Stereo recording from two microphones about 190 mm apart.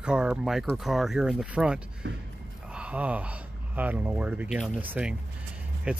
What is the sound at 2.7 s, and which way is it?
Speech, 5° right (ahead or behind).